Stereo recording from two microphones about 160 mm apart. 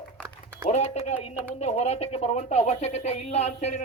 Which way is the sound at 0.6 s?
45° left (ahead or behind).